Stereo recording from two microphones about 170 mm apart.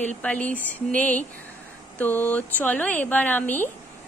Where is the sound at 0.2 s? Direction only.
10° left (ahead or behind).